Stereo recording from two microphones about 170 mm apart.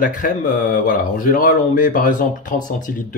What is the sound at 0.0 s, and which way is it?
Speech, 50° left (ahead or behind).